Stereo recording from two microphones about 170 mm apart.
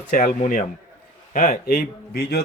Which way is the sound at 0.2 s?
55° left (ahead or behind).